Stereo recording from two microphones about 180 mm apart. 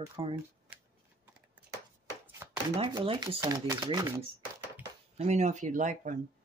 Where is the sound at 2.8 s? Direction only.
25° right (ahead or behind).